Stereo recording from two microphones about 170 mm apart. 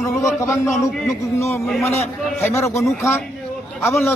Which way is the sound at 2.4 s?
15° left (ahead or behind).